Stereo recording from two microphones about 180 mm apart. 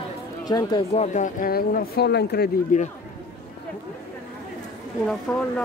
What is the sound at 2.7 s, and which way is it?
Speech, 45° left (ahead or behind).